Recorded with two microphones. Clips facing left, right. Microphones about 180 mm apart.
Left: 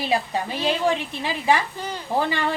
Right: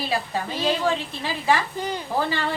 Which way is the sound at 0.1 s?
15° left (ahead or behind).